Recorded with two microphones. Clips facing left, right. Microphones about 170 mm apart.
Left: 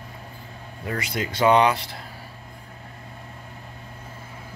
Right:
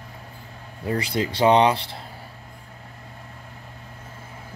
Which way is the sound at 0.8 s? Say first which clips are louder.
Right 4 dB; 30° right (ahead or behind).